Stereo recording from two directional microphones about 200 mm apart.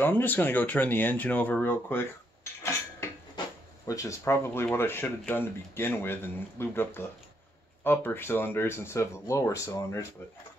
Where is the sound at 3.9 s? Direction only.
15° left (ahead or behind).